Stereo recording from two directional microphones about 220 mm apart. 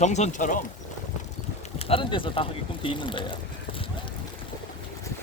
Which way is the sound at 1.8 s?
25° left (ahead or behind).